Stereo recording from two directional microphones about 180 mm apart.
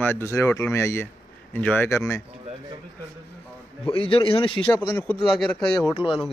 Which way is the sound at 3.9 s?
30° left (ahead or behind).